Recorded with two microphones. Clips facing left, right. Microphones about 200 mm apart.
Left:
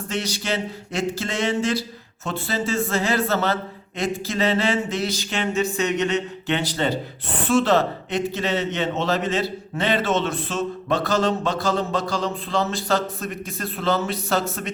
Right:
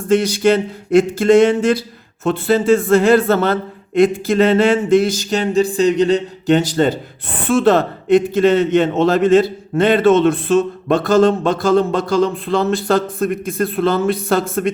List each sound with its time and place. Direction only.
0.1 s speech: 50° right (ahead or behind)